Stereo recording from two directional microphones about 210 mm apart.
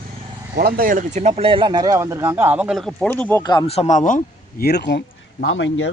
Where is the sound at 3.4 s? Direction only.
20° left (ahead or behind); by 4.2 s 35° left (ahead or behind).